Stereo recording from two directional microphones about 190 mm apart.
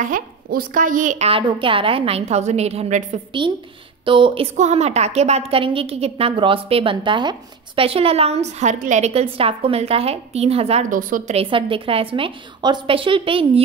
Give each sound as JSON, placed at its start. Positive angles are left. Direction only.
{"t": 0.0, "sound": "a woman's voice", "side_deg": -45}
{"t": 11.3, "sound": "a woman's voice", "side_deg": -30}